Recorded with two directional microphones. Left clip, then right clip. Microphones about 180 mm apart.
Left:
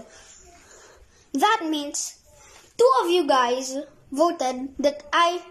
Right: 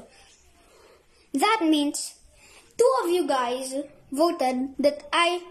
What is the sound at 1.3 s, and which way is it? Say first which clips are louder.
Speech: left 2 dB; 5° right (ahead or behind).